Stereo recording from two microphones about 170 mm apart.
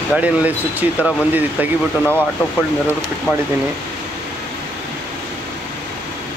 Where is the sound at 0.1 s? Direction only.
10° right (ahead or behind).